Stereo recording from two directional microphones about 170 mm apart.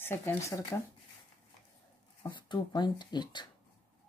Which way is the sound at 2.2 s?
25° left (ahead or behind).